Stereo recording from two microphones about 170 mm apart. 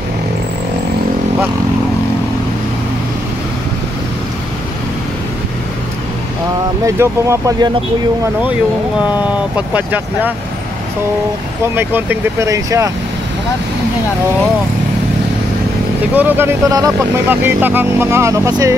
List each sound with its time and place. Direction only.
6.9 s speech: 15° right (ahead or behind)
11.6 s speech: 10° right (ahead or behind)
16.2 s speech: 10° right (ahead or behind)